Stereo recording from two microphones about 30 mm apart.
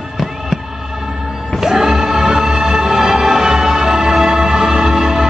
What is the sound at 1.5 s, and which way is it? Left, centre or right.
Music, centre.